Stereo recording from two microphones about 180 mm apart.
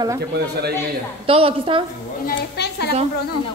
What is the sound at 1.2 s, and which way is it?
Speech, 30° right (ahead or behind).